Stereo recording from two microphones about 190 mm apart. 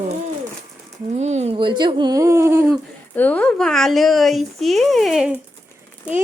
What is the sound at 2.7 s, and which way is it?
A woman's voice, 10° left (ahead or behind).